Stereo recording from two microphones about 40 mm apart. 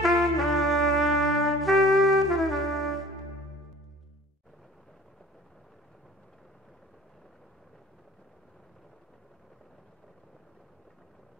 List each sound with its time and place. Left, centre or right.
0.0 s trumpet: centre